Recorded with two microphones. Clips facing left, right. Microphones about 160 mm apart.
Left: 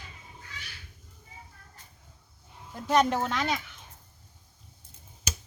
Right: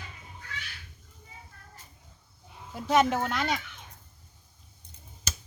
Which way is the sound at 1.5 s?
85° right.